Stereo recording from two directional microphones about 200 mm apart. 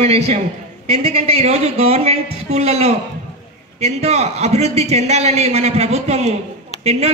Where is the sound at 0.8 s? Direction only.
30° right (ahead or behind).